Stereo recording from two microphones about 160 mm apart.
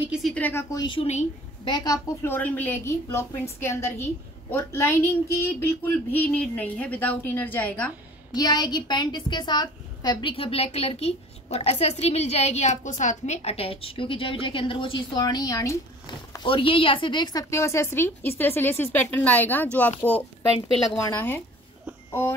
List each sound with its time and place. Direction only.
0.0 s a woman's voice: 5° right (ahead or behind)
0.3 s speech: 10° left (ahead or behind)
1.0 s a woman's voice: 45° left (ahead or behind)
1.7 s speech: 20° left (ahead or behind)
4.5 s speech: 15° left (ahead or behind)
8.3 s a woman's voice: 25° left (ahead or behind)
16.3 s a woman's voice: 30° left (ahead or behind); by 21.4 s 15° left (ahead or behind)